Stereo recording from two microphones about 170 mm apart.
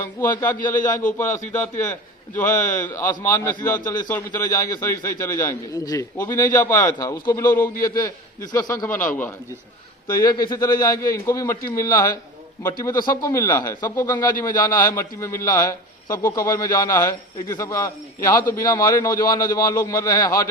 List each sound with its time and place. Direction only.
0.0 s a man's voice: 15° left (ahead or behind)
10.1 s a man's voice: 25° left (ahead or behind)